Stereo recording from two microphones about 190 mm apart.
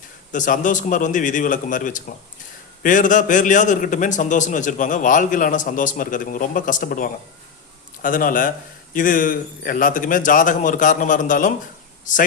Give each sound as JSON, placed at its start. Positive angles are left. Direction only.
{"t": 0.3, "sound": "a man's voice", "side_deg": 45}